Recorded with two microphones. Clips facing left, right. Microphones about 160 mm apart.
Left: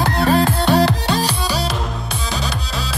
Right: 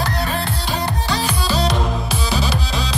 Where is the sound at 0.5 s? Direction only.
60° left (ahead or behind).